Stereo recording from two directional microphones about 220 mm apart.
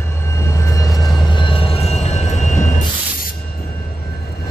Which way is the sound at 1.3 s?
25° left (ahead or behind).